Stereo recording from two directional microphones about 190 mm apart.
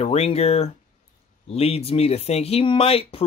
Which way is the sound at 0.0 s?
35° left (ahead or behind).